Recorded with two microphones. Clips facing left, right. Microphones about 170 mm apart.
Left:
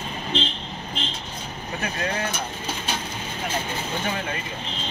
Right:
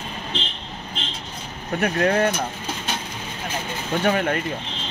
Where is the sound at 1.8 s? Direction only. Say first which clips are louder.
Right 9 dB; 65° right (ahead or behind).